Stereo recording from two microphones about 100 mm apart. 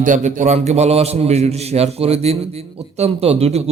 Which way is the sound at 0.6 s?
90° right.